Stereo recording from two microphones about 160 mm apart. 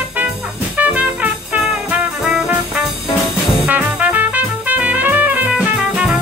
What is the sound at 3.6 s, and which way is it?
Music, 10° right (ahead or behind).